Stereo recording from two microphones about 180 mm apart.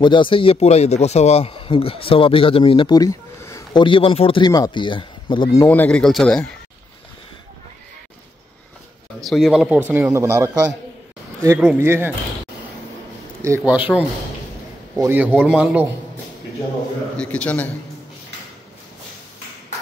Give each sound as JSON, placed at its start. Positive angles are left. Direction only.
{"t": 0.0, "sound": "a man's voice", "side_deg": 25}
{"t": 9.2, "sound": "a man's voice", "side_deg": 0}
{"t": 13.6, "sound": "a man's voice", "side_deg": -10}
{"t": 17.2, "sound": "a man's voice", "side_deg": 5}